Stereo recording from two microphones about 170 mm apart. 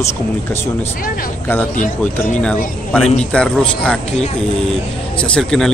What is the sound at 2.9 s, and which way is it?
A man's voice, 5° left (ahead or behind).